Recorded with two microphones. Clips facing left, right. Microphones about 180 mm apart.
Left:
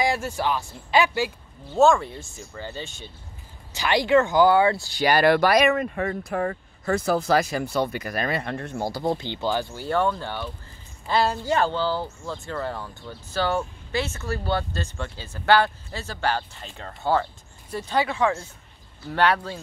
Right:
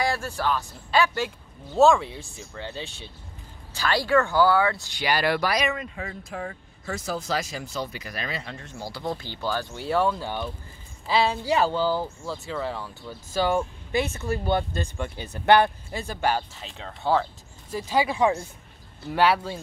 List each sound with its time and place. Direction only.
0.0 s speech: 15° left (ahead or behind)
1.7 s speech: centre (ahead or behind)
3.7 s speech: 15° left (ahead or behind)
4.8 s speech: 45° left (ahead or behind)
8.9 s speech: 25° left (ahead or behind)
9.8 s speech: 5° right (ahead or behind)
16.5 s speech: centre (ahead or behind)